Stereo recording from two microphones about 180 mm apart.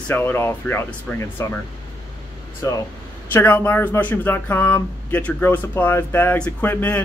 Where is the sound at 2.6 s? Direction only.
15° left (ahead or behind).